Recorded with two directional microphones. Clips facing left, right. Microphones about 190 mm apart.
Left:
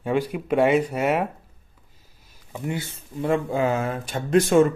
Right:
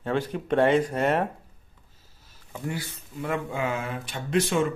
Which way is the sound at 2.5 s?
20° left (ahead or behind).